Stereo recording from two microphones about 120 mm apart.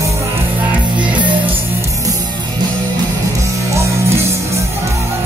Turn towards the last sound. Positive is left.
turn(degrees=-25)  # may be behind; listen again after turning